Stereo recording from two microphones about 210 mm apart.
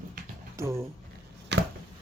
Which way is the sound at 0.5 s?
15° right (ahead or behind).